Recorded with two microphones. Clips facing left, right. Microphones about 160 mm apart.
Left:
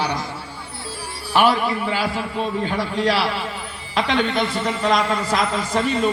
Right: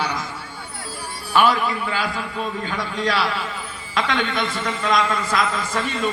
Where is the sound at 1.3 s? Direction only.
30° left (ahead or behind).